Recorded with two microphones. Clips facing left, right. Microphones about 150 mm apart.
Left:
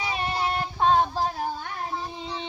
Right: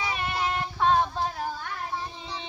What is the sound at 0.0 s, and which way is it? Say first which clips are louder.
Child singing: left 2 dB; 30° left (ahead or behind).